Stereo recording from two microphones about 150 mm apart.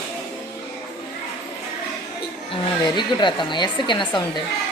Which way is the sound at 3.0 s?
30° left (ahead or behind).